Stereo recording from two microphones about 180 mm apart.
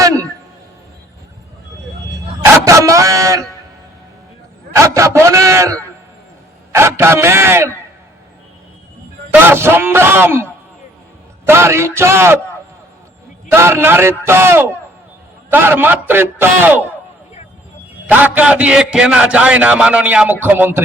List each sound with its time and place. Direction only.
0.0 s a sound: 20° right (ahead or behind)
2.4 s dog: 15° right (ahead or behind)
4.7 s a man's voice: 15° right (ahead or behind)
9.3 s a man's voice: 10° right (ahead or behind)
13.5 s a man's voice: 15° right (ahead or behind)
18.1 s a man's voice: 10° right (ahead or behind)